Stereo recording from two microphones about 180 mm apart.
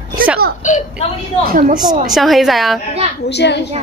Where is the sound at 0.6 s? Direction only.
45° left (ahead or behind).